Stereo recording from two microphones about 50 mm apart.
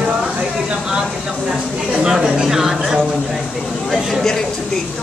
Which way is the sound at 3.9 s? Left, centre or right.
Centre.